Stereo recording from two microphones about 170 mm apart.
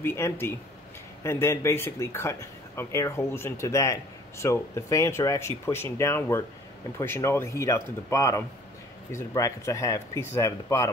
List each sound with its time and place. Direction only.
0.0 s speech: 15° left (ahead or behind)